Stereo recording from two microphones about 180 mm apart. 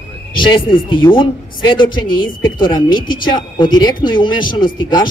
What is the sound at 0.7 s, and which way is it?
A man's voice, 25° left (ahead or behind).